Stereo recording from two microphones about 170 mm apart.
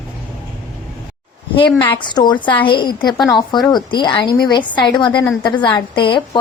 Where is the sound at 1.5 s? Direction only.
30° left (ahead or behind).